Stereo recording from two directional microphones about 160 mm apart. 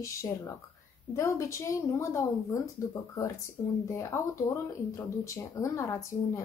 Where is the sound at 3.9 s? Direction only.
15° left (ahead or behind).